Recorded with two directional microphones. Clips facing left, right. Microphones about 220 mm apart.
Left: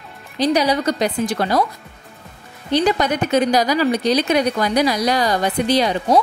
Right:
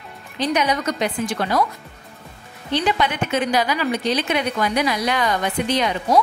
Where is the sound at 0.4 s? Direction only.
35° left (ahead or behind).